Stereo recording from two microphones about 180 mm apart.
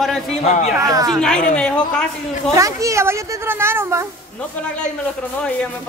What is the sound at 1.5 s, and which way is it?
A woman's voice, 5° left (ahead or behind).